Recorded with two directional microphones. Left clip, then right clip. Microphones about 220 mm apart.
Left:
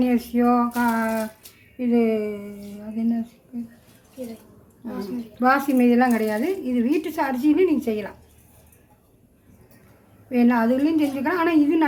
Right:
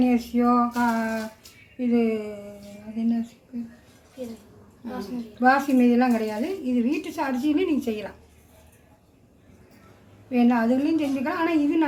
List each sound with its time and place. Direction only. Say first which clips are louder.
0.0 s a woman's voice: left 1 dB; 20° left (ahead or behind)
4.9 s speech: left 2 dB; 25° left (ahead or behind)
10.3 s speech: left 2 dB; 25° left (ahead or behind)